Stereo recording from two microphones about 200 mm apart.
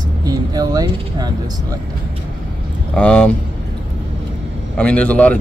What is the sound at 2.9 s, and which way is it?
Speech, 5° left (ahead or behind).